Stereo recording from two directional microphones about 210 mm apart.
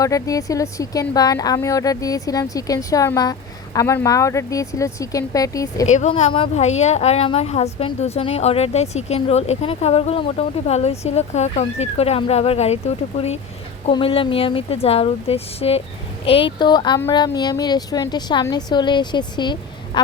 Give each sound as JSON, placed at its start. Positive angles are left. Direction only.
{"t": 0.0, "sound": "speech", "side_deg": 15}
{"t": 5.8, "sound": "a woman's voice", "side_deg": 35}